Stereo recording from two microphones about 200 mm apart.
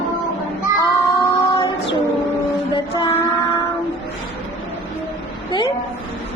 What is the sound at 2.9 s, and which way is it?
Child singing, 25° left (ahead or behind).